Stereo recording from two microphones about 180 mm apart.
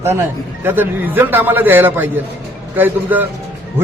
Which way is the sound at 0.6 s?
10° right (ahead or behind).